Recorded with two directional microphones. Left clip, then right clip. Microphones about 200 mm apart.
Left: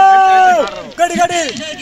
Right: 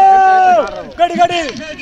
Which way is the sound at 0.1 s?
50° left (ahead or behind).